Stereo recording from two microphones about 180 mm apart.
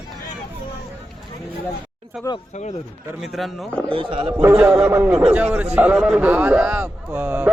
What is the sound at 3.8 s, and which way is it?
Speech, 30° right (ahead or behind).